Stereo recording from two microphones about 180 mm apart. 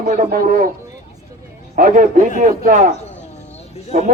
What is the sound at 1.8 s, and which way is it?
Speech, 50° right (ahead or behind).